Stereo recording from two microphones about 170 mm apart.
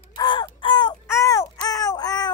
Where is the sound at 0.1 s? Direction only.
25° left (ahead or behind).